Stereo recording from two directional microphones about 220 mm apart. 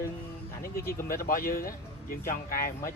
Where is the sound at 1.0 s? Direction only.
40° left (ahead or behind).